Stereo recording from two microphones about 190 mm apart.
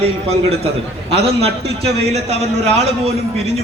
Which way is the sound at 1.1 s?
30° right (ahead or behind).